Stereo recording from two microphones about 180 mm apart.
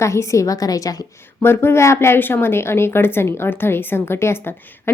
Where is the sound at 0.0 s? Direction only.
15° left (ahead or behind).